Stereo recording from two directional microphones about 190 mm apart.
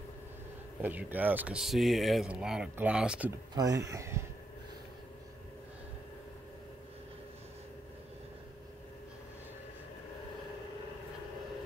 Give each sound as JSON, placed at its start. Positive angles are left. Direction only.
{"t": 0.7, "sound": "speech", "side_deg": -10}
{"t": 3.5, "sound": "speech", "side_deg": -20}